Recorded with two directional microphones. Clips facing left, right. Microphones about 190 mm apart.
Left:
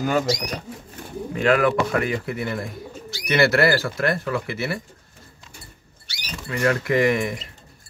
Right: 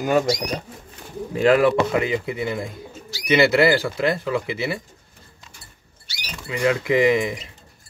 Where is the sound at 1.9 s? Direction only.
20° right (ahead or behind).